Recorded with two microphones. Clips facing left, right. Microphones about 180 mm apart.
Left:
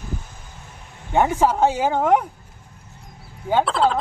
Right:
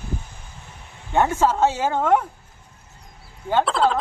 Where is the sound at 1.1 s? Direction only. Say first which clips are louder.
Left 1 dB; 15° left (ahead or behind).